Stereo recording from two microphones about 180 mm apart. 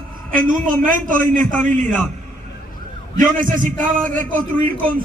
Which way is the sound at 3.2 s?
45° right (ahead or behind).